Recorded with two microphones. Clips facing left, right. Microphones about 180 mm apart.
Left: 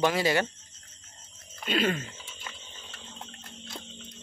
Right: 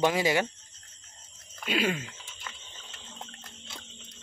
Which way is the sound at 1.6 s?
5° right (ahead or behind).